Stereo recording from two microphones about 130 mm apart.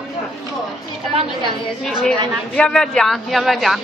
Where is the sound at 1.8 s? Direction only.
5° left (ahead or behind).